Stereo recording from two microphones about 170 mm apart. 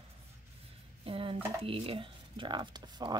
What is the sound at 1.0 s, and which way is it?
Speech, 35° right (ahead or behind).